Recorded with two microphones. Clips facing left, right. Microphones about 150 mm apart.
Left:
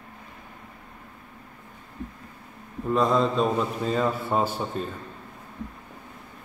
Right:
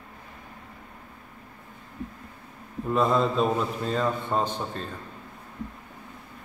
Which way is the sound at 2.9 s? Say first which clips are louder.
Left 1 dB; centre (ahead or behind).